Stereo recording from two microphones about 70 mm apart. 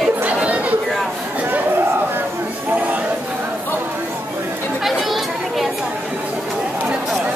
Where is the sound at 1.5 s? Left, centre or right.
Right.